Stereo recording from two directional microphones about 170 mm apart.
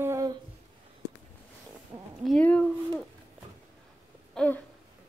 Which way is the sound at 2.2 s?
5° left (ahead or behind).